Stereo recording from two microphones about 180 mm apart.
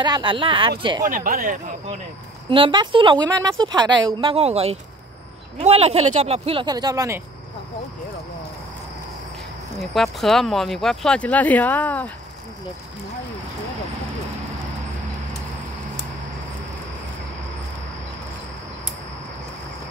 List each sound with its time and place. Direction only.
0.0 s a woman's voice: 25° right (ahead or behind)
1.0 s speech: 50° right (ahead or behind)
2.5 s a woman's voice: 25° right (ahead or behind)
9.8 s speech: centre (ahead or behind)